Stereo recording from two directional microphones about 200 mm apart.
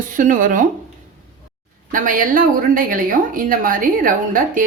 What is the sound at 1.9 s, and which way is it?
A woman's voice, 45° right (ahead or behind).